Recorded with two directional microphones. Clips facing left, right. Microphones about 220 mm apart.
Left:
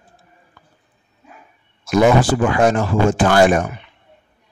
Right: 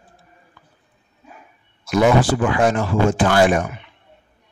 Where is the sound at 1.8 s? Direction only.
45° left (ahead or behind).